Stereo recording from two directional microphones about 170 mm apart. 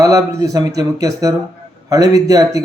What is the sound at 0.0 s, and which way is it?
Speech, 20° right (ahead or behind).